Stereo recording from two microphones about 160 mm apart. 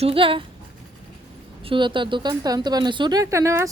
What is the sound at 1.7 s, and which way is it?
A woman's voice, 30° right (ahead or behind).